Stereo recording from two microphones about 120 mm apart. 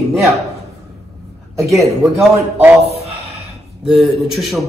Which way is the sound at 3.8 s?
Centre (ahead or behind).